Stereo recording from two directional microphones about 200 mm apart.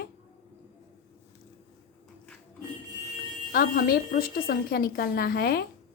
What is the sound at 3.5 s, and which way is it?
A woman's voice, 45° left (ahead or behind).